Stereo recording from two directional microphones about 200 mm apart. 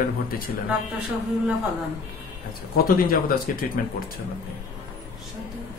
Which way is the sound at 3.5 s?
40° left (ahead or behind).